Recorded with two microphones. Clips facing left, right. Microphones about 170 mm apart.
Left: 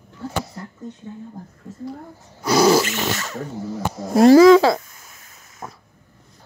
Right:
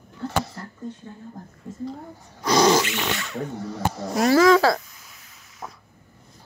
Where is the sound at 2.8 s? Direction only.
45° left (ahead or behind).